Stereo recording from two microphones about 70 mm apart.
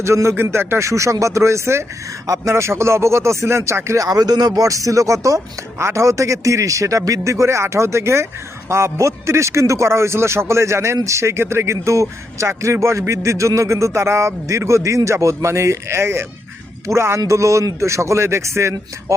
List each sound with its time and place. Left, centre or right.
0.0 s speech: right
0.9 s a man's voice: right
2.2 s speech: right
2.5 s a man's voice: right
4.0 s a man's voice: right